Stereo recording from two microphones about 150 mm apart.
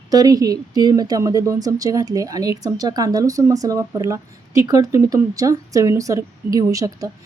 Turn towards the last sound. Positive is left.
turn(degrees=-25)  # may be behind; listen again after turning